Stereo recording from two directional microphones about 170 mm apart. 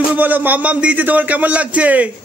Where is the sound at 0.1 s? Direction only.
10° right (ahead or behind).